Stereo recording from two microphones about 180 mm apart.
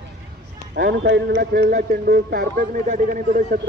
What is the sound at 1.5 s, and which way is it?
A man's voice, 50° right (ahead or behind).